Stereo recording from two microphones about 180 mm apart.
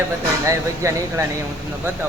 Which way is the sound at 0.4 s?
15° right (ahead or behind).